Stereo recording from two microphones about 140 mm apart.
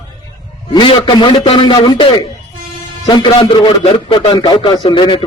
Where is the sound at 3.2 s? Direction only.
35° left (ahead or behind).